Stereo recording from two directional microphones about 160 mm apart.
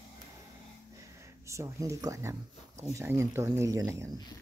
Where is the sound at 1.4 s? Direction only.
20° right (ahead or behind).